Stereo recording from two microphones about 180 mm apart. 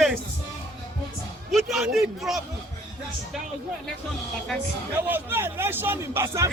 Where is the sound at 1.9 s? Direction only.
Centre (ahead or behind).